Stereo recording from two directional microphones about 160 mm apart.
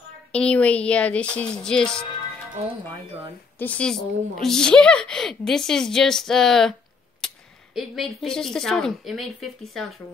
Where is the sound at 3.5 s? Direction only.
10° left (ahead or behind).